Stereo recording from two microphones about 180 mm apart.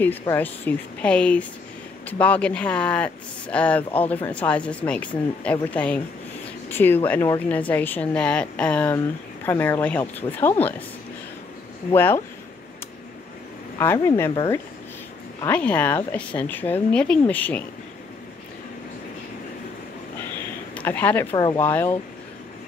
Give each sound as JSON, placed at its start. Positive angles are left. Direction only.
{"t": 0.2, "sound": "speech", "side_deg": 10}
{"t": 11.9, "sound": "speech", "side_deg": 10}
{"t": 13.7, "sound": "speech", "side_deg": 15}
{"t": 15.4, "sound": "speech", "side_deg": 10}
{"t": 20.7, "sound": "speech", "side_deg": 10}
{"t": 21.4, "sound": "speech", "side_deg": 25}
{"t": 21.6, "sound": "speech", "side_deg": 10}